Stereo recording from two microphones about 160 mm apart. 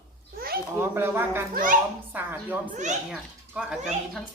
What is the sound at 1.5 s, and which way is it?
Speech, 60° right (ahead or behind).